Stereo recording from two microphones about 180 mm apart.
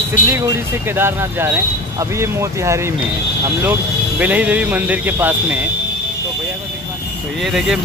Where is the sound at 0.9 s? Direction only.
15° right (ahead or behind).